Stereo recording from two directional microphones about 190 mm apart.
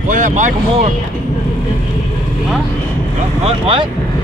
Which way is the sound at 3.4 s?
30° right (ahead or behind).